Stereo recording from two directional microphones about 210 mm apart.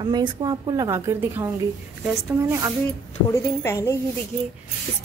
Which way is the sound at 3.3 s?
15° left (ahead or behind).